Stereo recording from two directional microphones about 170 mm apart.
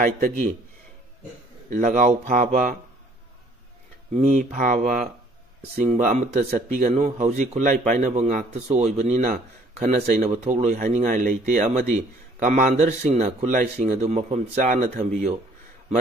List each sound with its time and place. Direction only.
1.7 s a man's voice: 50° right (ahead or behind)
4.1 s a man's voice: 50° right (ahead or behind)